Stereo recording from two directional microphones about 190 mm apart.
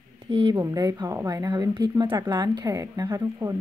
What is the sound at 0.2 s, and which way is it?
Speech, 25° right (ahead or behind).